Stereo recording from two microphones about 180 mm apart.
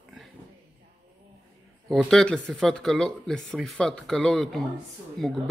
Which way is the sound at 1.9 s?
Centre (ahead or behind).